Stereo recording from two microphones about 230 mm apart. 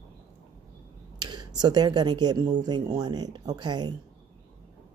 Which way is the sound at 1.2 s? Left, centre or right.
Centre.